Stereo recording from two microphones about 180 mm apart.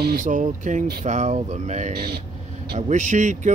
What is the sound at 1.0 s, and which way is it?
Speech, 40° right (ahead or behind).